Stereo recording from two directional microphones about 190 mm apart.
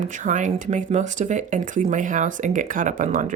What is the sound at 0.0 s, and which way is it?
Speech, 40° right (ahead or behind).